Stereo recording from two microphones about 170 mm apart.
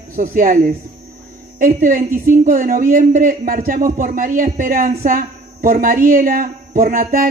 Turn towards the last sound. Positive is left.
turn(degrees=-55)  # may be behind; listen again after turning